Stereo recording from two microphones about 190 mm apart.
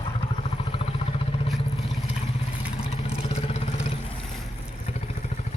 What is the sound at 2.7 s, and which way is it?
Vehicle, 30° left (ahead or behind).